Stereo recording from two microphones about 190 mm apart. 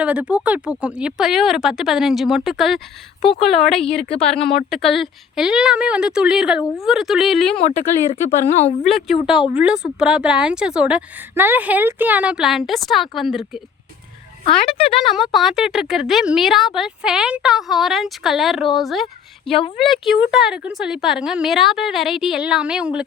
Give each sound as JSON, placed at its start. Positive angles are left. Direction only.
{"t": 0.0, "sound": "a woman's voice", "side_deg": -5}
{"t": 7.6, "sound": "speech", "side_deg": 35}
{"t": 8.8, "sound": "a woman's voice", "side_deg": 0}
{"t": 15.0, "sound": "a woman's voice", "side_deg": 0}
{"t": 19.5, "sound": "speech", "side_deg": 30}
{"t": 19.7, "sound": "a woman's voice", "side_deg": 0}